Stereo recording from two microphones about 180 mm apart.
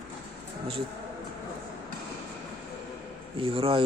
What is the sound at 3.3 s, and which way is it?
Speech, 30° right (ahead or behind).